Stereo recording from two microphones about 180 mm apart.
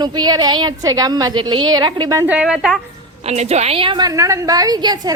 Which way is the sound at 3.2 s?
35° right (ahead or behind).